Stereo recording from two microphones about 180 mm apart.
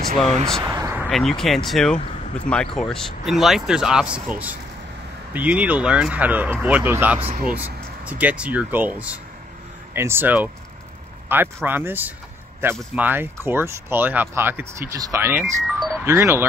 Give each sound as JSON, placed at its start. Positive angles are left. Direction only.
{"t": 0.6, "sound": "a sound", "side_deg": -15}
{"t": 1.0, "sound": "speech", "side_deg": 0}
{"t": 15.4, "sound": "music", "side_deg": 0}
{"t": 16.0, "sound": "speech", "side_deg": -15}